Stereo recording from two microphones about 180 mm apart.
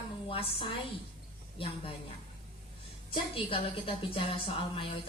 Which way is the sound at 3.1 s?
30° left (ahead or behind).